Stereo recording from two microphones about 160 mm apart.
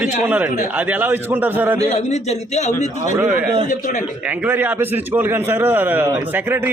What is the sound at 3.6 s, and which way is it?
Speech, 50° left (ahead or behind).